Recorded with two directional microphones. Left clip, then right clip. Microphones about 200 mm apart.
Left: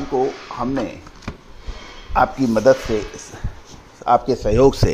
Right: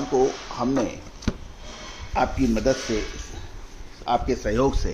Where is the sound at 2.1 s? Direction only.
20° left (ahead or behind).